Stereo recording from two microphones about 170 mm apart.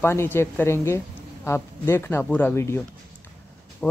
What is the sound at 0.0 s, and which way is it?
Speech, 15° left (ahead or behind).